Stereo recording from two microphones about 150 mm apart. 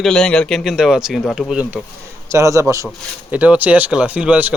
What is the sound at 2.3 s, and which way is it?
Speech, 20° right (ahead or behind).